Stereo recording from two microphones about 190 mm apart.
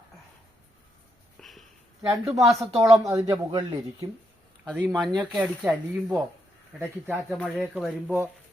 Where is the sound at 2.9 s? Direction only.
Centre (ahead or behind).